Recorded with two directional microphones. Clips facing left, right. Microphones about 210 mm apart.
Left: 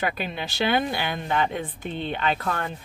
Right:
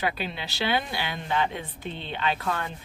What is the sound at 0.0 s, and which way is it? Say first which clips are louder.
Speech: left 2 dB; 50° left (ahead or behind).